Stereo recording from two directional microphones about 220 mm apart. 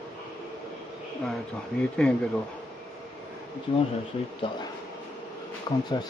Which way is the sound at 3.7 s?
25° left (ahead or behind).